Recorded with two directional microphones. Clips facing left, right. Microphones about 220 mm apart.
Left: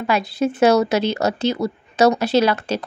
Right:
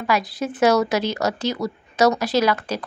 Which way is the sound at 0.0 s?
25° left (ahead or behind).